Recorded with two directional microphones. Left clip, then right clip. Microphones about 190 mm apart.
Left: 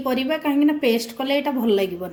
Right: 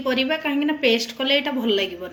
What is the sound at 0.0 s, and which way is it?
Speech, 55° left (ahead or behind).